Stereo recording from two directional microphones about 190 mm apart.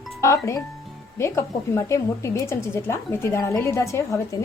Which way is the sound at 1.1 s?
15° left (ahead or behind).